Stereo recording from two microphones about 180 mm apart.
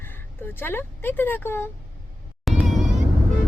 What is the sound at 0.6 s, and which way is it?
Speech, 10° left (ahead or behind).